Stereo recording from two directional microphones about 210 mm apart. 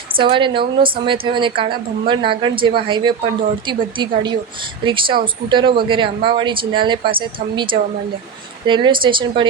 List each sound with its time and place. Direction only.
0.2 s speech: 25° right (ahead or behind)